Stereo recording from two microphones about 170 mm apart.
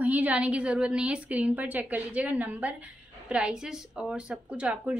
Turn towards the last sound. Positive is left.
turn(degrees=-5)  # may be behind; listen again after turning